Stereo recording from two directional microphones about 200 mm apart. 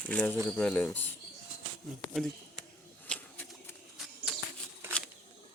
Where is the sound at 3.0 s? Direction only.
5° left (ahead or behind).